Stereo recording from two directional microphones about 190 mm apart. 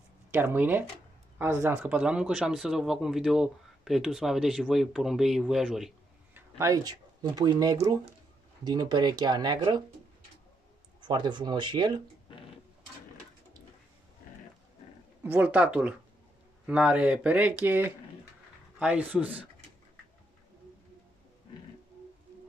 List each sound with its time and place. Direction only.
0.3 s speech: 10° right (ahead or behind)
6.6 s speech: 20° right (ahead or behind)
11.0 s speech: 25° right (ahead or behind)
15.2 s speech: 10° right (ahead or behind)